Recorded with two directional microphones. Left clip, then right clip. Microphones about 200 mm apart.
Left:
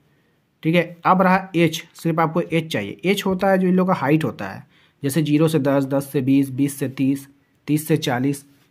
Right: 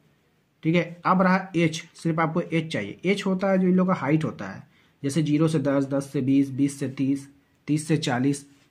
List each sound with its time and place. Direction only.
0.6 s speech: 35° left (ahead or behind)